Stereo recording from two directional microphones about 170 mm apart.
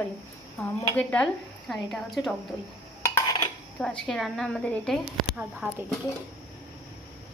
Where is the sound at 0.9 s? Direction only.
5° left (ahead or behind).